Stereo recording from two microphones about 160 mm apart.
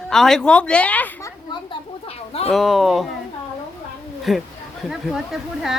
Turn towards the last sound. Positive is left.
turn(degrees=0)  # may be behind; listen again after turning